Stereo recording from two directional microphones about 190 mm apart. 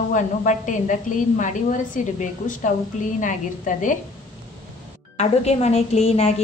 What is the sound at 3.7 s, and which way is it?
Speech, 40° left (ahead or behind).